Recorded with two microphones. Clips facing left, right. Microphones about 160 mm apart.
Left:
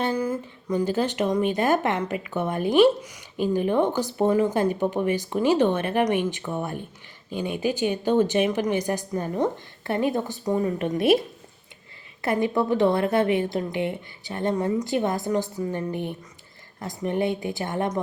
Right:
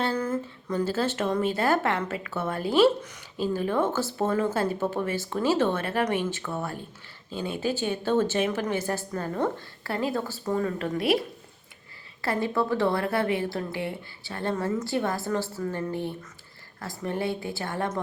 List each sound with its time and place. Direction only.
0.0 s speech: 10° left (ahead or behind)
12.2 s a woman's voice: 20° left (ahead or behind)